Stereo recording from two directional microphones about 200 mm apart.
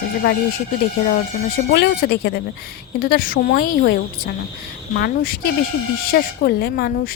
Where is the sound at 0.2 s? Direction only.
50° left (ahead or behind).